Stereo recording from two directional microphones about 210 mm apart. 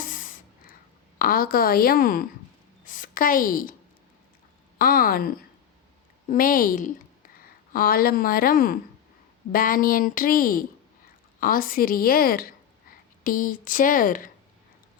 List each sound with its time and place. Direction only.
1.2 s a woman's voice: 45° left (ahead or behind)
4.8 s a woman's voice: 45° left (ahead or behind)